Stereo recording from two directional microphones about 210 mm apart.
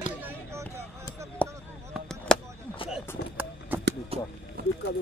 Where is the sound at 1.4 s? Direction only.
5° left (ahead or behind).